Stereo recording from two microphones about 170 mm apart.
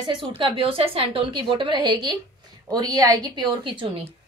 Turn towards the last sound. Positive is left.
turn(degrees=-30)  # may be behind; listen again after turning